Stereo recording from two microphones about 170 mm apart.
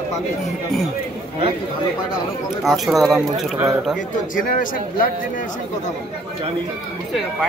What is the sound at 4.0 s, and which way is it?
Speech, 55° left (ahead or behind).